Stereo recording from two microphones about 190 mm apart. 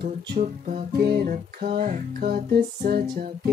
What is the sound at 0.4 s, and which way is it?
Music, 40° right (ahead or behind).